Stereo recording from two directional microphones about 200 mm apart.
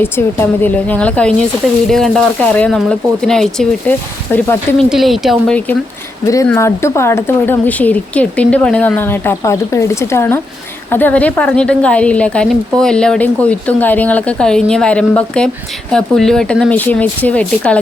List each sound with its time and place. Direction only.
0.0 s a woman's voice: 10° left (ahead or behind)
6.2 s a woman's voice: 15° left (ahead or behind)